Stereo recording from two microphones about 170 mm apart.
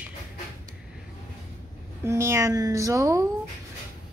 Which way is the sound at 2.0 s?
15° right (ahead or behind).